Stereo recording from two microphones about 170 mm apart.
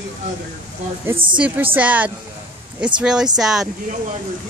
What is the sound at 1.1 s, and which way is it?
Speech, 30° right (ahead or behind).